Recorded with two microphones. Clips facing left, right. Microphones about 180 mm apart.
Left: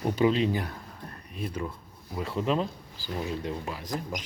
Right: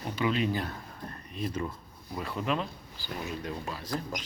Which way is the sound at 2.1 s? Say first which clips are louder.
Left 4 dB; 25° left (ahead or behind).